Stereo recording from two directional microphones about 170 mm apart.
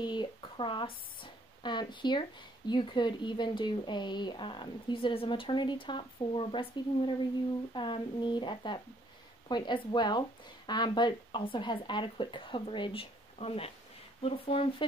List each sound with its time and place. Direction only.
0.0 s speech: 25° left (ahead or behind)
7.7 s speech: 30° left (ahead or behind)